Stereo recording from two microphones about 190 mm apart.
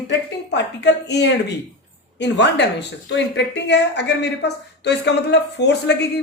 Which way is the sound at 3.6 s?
65° left (ahead or behind).